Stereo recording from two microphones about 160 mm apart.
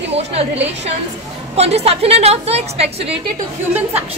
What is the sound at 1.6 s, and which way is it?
A woman's voice, 40° right (ahead or behind).